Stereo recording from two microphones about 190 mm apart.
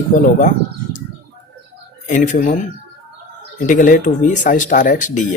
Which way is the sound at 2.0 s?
40° left (ahead or behind).